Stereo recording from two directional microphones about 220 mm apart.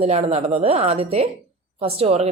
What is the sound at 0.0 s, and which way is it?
Speech, 30° right (ahead or behind).